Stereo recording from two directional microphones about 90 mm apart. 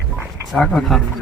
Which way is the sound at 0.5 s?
15° left (ahead or behind).